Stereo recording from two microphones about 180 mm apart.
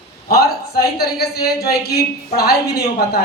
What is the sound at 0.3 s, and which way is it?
A man's voice, 60° left (ahead or behind).